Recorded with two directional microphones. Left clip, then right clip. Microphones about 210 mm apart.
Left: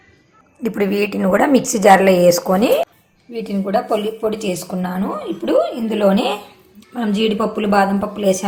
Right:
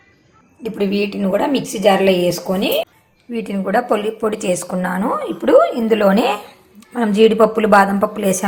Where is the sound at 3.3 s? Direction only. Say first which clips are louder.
Right 1 dB; 15° right (ahead or behind).